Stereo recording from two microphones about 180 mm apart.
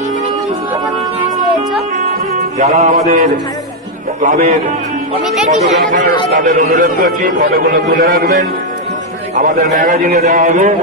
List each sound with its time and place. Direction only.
2.6 s music: 40° right (ahead or behind)
4.2 s a man's voice: 45° right (ahead or behind)
5.2 s speech: centre (ahead or behind)
5.9 s a man's voice: 45° right (ahead or behind)